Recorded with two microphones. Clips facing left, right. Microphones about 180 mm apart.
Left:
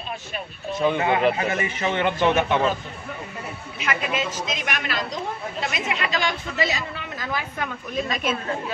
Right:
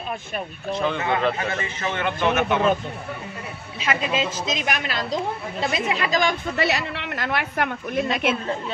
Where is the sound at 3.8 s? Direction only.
30° right (ahead or behind).